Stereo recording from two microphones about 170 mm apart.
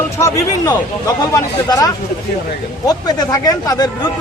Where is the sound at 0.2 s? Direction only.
20° left (ahead or behind).